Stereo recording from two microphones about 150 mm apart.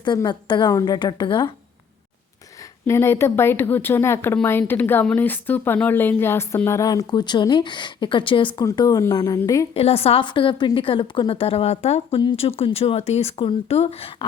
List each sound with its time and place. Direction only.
0.0 s a woman's voice: 30° left (ahead or behind)
2.8 s a woman's voice: 15° left (ahead or behind)
9.7 s a woman's voice: 40° left (ahead or behind)
12.2 s a woman's voice: 35° left (ahead or behind)